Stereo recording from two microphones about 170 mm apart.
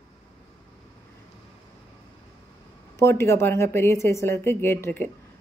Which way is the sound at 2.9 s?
15° left (ahead or behind).